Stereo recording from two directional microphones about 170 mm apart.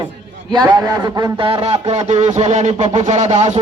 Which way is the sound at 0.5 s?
25° right (ahead or behind).